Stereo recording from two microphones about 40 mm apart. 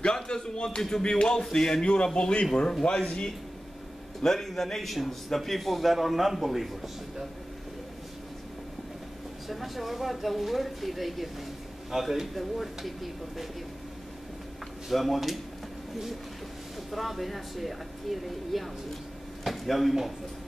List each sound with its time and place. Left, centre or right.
0.0 s speech: left
0.7 s music: centre
2.1 s speech: left
4.2 s a man's voice: centre
9.5 s a man's voice: centre
14.9 s a man's voice: centre
16.9 s a man's voice: centre